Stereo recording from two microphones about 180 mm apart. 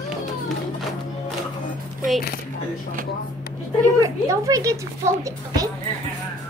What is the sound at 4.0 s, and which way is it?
Speech, 20° right (ahead or behind).